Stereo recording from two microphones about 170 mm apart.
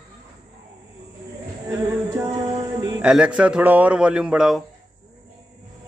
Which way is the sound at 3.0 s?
5° right (ahead or behind).